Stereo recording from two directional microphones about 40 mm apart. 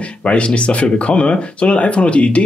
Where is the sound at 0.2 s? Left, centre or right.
Left.